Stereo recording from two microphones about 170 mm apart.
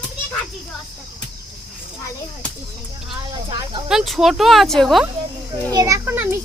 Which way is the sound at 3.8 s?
Centre (ahead or behind).